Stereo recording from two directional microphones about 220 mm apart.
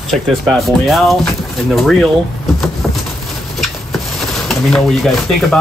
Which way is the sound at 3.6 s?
Centre (ahead or behind).